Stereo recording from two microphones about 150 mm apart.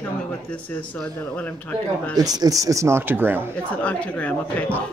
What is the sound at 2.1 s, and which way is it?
Speech, 25° right (ahead or behind).